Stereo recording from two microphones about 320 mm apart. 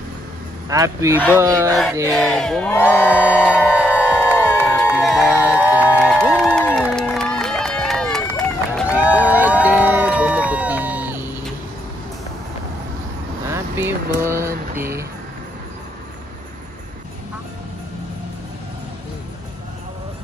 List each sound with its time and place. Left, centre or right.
0.7 s speech: centre
1.3 s crowd: centre
13.5 s vehicle: centre
14.2 s a sound: centre
14.8 s music: centre